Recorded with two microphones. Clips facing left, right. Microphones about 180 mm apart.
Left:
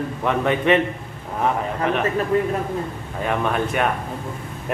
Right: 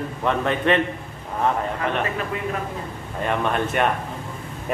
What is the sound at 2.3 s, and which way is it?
Speech, 40° left (ahead or behind).